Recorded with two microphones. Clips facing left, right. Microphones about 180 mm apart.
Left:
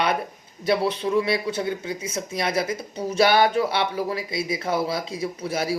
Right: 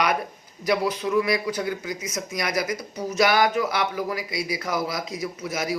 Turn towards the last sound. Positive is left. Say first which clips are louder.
# left 2 dB
turn(degrees=30)  # may be behind; listen again after turning